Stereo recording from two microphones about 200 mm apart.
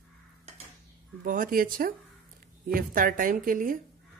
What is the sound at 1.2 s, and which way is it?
Speech, 40° right (ahead or behind).